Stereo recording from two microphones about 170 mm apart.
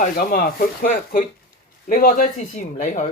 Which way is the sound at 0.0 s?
55° left (ahead or behind).